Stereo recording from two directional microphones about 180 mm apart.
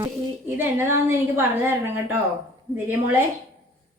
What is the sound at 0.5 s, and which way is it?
A woman's voice, 10° right (ahead or behind).